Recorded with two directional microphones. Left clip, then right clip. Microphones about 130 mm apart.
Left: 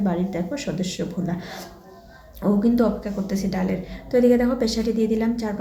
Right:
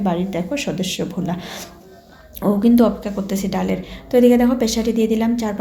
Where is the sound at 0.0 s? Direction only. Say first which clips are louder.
Right 4 dB; 20° right (ahead or behind).